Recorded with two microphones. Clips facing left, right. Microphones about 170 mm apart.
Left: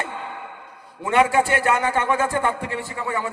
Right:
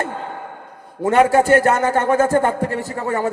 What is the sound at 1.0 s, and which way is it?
A man's voice, 40° right (ahead or behind).